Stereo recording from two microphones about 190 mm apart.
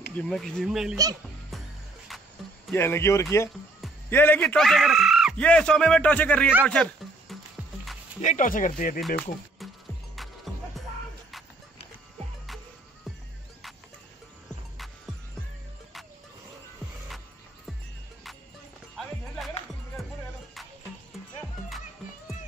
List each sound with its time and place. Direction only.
0.2 s speech: centre (ahead or behind)
2.0 s music: centre (ahead or behind)
2.7 s speech: 10° left (ahead or behind)
6.6 s a sound: 5° left (ahead or behind)
8.2 s speech: 40° left (ahead or behind)
9.0 s speech: centre (ahead or behind)
10.1 s music: centre (ahead or behind)
18.9 s music: centre (ahead or behind)
21.4 s music: centre (ahead or behind)